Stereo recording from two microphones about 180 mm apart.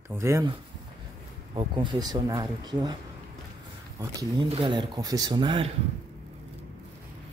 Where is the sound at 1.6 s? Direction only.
25° right (ahead or behind).